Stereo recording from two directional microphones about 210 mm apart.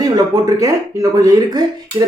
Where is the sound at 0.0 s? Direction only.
15° right (ahead or behind).